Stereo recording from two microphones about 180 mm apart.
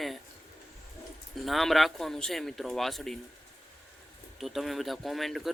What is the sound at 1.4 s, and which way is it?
Speech, centre (ahead or behind).